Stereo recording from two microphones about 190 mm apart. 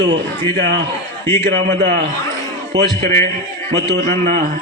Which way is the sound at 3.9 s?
55° right (ahead or behind).